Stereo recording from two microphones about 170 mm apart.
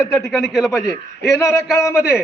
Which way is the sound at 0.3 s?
Centre (ahead or behind).